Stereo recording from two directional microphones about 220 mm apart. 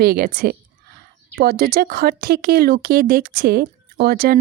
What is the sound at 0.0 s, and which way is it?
Speech, 45° right (ahead or behind).